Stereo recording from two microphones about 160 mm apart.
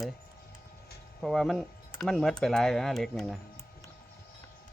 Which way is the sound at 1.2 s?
Centre (ahead or behind).